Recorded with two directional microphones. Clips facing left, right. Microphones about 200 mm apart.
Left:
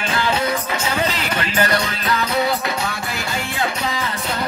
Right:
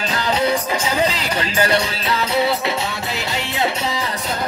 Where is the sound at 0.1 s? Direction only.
35° right (ahead or behind).